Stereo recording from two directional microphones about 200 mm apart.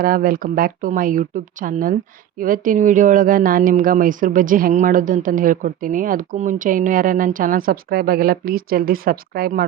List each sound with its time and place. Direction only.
0.0 s speech: 45° right (ahead or behind)